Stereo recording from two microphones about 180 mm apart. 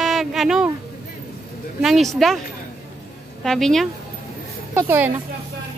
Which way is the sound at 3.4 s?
Centre (ahead or behind).